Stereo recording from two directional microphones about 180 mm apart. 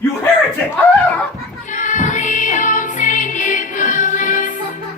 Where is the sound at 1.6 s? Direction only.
45° left (ahead or behind).